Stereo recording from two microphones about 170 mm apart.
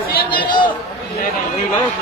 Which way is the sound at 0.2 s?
60° left (ahead or behind).